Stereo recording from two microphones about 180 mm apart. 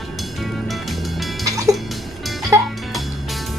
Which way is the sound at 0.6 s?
Centre (ahead or behind).